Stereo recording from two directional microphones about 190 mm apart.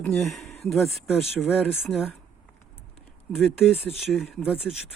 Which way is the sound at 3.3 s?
Centre (ahead or behind).